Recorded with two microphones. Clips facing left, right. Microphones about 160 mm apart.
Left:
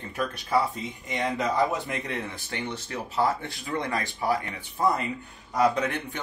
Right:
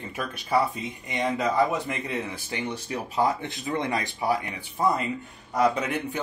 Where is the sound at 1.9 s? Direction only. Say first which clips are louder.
Right 2 dB; 5° right (ahead or behind).